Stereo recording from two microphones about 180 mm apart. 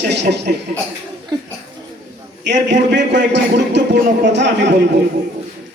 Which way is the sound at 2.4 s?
75° right (ahead or behind).